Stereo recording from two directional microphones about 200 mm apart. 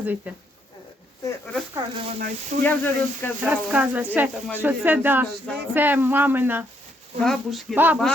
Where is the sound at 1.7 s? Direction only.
25° right (ahead or behind).